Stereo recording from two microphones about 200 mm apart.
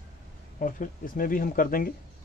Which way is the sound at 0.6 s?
45° left (ahead or behind).